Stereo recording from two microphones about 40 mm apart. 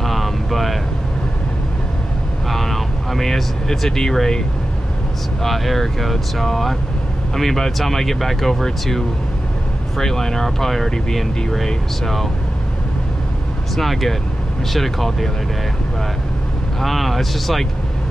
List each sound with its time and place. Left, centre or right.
0.0 s vehicle: centre
2.5 s speech: centre
5.4 s speech: centre
13.7 s speech: centre
16.8 s speech: centre